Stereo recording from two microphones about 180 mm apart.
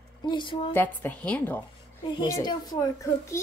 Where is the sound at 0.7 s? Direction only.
10° left (ahead or behind).